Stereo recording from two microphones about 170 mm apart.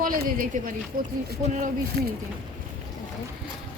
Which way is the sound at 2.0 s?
75° right (ahead or behind).